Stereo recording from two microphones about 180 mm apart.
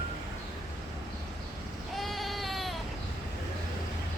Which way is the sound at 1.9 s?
Centre (ahead or behind).